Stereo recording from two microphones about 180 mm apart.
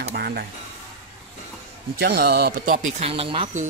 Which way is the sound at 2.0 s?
65° right (ahead or behind).